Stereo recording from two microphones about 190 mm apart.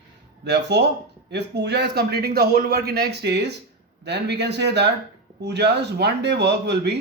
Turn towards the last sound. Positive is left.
turn(degrees=-60)  # may be behind; listen again after turning